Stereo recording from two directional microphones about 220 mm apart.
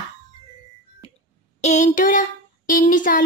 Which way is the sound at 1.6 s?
30° left (ahead or behind).